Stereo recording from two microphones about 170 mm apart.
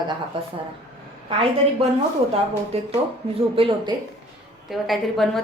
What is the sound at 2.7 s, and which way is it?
A woman's voice, 35° right (ahead or behind).